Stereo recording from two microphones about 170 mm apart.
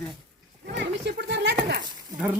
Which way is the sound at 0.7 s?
90° right.